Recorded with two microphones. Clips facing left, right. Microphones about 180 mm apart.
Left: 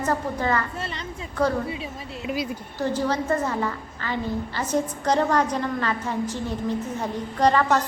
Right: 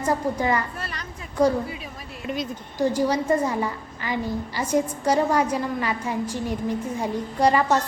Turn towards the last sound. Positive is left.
turn(degrees=-10)  # may be behind; listen again after turning